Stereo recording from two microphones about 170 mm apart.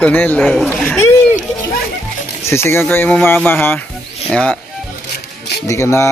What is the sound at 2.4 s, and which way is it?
A man's voice, 15° left (ahead or behind).